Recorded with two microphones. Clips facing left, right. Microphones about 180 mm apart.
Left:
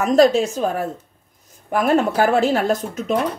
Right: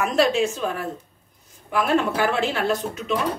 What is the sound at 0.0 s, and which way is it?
A woman's voice, 40° left (ahead or behind).